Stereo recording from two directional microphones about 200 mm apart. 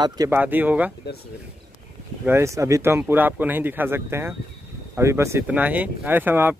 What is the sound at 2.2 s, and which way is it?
Speech, 15° right (ahead or behind).